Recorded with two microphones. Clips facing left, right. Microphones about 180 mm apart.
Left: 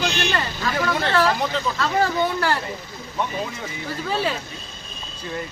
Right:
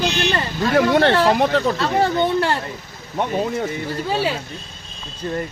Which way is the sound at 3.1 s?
55° right (ahead or behind).